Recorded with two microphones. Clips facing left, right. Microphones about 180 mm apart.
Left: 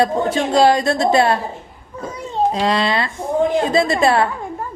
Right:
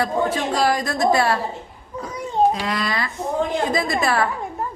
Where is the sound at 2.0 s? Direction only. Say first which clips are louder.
Left 2 dB; 25° left (ahead or behind).